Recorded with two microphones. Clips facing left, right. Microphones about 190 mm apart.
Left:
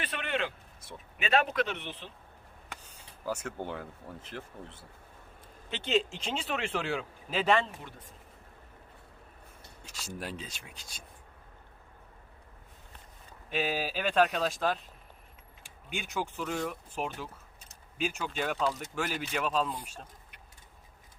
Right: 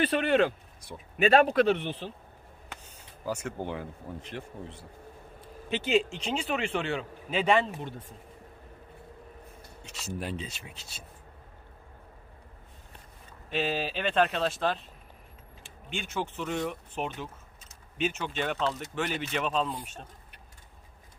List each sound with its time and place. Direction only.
0.0 s a man's voice: 35° right (ahead or behind)
3.2 s speech: 5° right (ahead or behind)
5.6 s speech: 15° right (ahead or behind)
7.6 s speech: 25° right (ahead or behind)
10.0 s speech: centre (ahead or behind)
13.5 s speech: 10° left (ahead or behind)
16.2 s speech: 10° left (ahead or behind)